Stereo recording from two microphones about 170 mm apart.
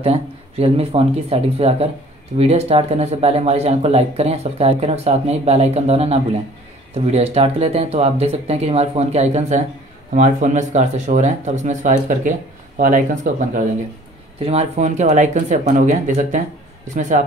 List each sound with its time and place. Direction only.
0.0 s speech: 35° right (ahead or behind)
14.4 s speech: 40° right (ahead or behind)